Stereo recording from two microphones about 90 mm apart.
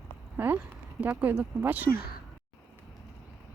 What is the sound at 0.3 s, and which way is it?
Speech, 20° right (ahead or behind).